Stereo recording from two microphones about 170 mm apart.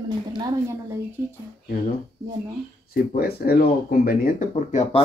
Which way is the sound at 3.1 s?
65° left (ahead or behind).